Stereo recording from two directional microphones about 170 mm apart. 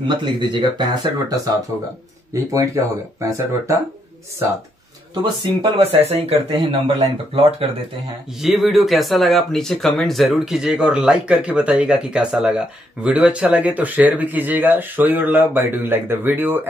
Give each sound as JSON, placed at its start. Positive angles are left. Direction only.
{"t": 0.0, "sound": "speech", "side_deg": -25}
{"t": 2.5, "sound": "speech", "side_deg": -15}
{"t": 5.2, "sound": "speech", "side_deg": -30}
{"t": 8.4, "sound": "speech", "side_deg": 0}